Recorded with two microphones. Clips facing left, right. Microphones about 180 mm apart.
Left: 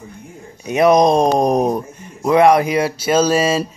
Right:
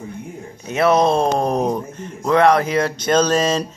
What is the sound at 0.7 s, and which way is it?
Speech, 15° left (ahead or behind).